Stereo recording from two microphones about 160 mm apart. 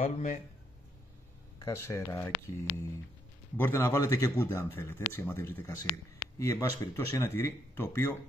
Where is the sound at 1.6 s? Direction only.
15° left (ahead or behind).